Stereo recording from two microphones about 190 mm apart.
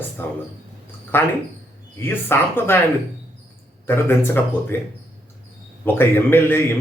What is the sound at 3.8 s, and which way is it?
Speech, 10° left (ahead or behind).